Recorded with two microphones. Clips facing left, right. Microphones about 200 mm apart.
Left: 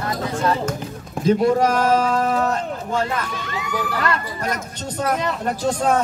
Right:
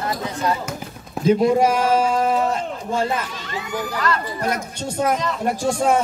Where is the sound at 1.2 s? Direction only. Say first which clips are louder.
Right 1 dB; 10° right (ahead or behind).